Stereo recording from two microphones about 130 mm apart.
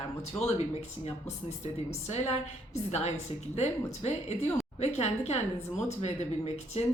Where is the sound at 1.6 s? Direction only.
60° left (ahead or behind).